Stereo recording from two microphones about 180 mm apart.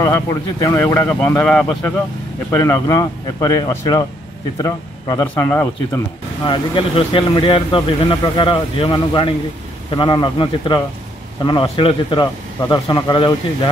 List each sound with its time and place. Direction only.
0.0 s a man's voice: 20° left (ahead or behind)
2.5 s a man's voice: 15° left (ahead or behind)
6.4 s speech: 30° left (ahead or behind)